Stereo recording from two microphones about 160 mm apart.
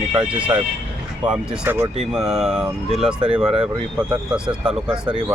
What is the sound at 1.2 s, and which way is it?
Speech, 10° right (ahead or behind).